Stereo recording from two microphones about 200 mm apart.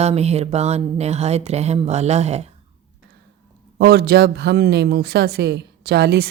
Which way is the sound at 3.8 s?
50° right (ahead or behind).